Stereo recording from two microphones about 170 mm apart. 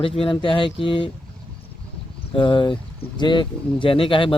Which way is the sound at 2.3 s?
30° left (ahead or behind).